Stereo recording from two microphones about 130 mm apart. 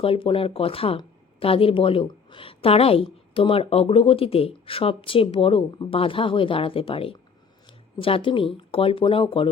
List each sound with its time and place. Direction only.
0.0 s a woman's voice: 45° left (ahead or behind)